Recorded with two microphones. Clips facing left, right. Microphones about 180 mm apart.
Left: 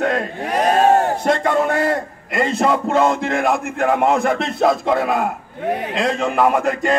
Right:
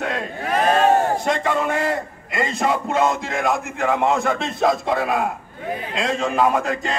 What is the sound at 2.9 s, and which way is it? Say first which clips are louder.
A man's voice: left 4 dB; 55° left (ahead or behind).